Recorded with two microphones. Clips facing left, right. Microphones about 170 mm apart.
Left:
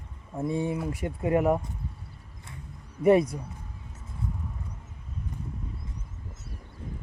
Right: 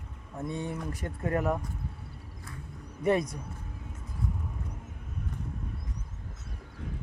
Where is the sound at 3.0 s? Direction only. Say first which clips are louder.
Left 6 dB; 30° left (ahead or behind).